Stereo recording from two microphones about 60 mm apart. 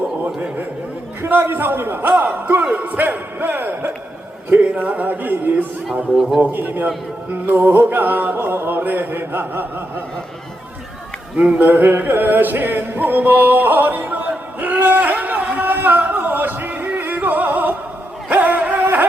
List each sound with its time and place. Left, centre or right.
1.3 s music: right
4.4 s speech: right
6.1 s a man's voice: centre
6.4 s speech: right
7.4 s music: right
11.6 s music: right
18.3 s a sound: right